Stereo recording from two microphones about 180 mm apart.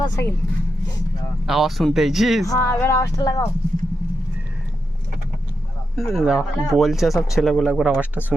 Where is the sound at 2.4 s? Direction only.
15° left (ahead or behind).